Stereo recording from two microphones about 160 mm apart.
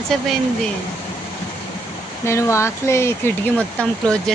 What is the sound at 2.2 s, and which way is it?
A woman's voice, 15° left (ahead or behind).